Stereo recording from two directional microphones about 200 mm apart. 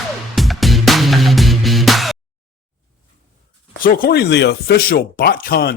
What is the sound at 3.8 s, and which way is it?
Speech, 45° left (ahead or behind).